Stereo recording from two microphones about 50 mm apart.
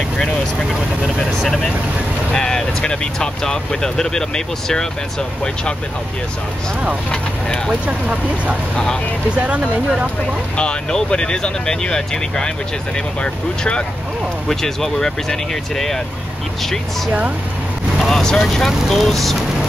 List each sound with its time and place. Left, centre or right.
2.3 s speech: centre
7.1 s speech: centre
7.8 s speech: right
10.6 s speech: centre
14.5 s speech: centre
17.9 s vehicle: centre
18.2 s speech: centre